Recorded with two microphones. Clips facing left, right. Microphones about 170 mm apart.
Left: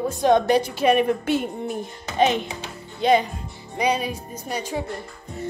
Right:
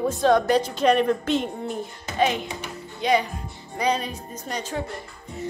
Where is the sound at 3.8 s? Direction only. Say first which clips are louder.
Left 2 dB; 10° left (ahead or behind).